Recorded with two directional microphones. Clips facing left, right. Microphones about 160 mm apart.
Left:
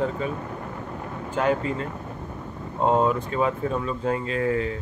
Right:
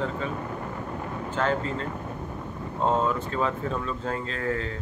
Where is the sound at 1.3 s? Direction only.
10° left (ahead or behind).